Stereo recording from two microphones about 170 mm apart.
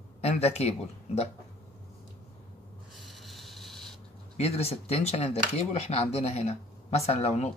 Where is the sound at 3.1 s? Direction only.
Centre (ahead or behind).